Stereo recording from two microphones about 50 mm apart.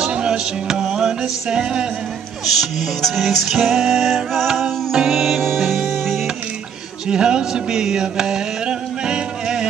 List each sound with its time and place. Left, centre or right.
0.1 s music: centre
2.4 s music: centre
4.6 s music: centre
5.4 s music: centre
7.1 s music: centre